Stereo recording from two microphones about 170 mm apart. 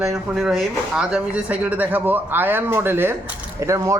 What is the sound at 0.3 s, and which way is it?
Speech, 5° right (ahead or behind).